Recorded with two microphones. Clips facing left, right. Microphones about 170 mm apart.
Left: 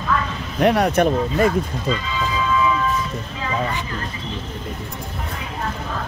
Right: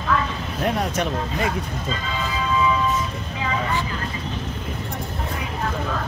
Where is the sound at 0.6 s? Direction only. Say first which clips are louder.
Left 7 dB; 80° left.